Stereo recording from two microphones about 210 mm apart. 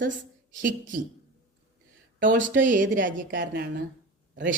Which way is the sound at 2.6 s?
40° right (ahead or behind).